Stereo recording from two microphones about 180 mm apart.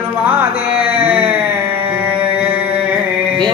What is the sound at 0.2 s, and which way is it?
Music, 10° right (ahead or behind).